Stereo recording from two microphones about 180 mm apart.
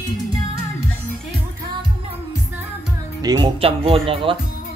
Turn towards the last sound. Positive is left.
turn(degrees=-30)  # may be behind; listen again after turning